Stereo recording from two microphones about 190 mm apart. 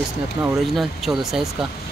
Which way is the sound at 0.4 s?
Centre (ahead or behind).